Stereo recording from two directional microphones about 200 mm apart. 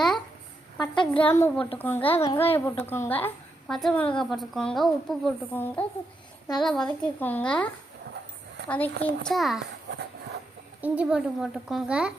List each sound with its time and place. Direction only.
0.8 s a woman's voice: 25° left (ahead or behind)
1.3 s a woman's voice: 10° left (ahead or behind)
2.0 s a woman's voice: 30° left (ahead or behind)
2.6 s a woman's voice: 10° left (ahead or behind)
8.7 s a woman's voice: 10° left (ahead or behind)
10.8 s a woman's voice: 5° right (ahead or behind)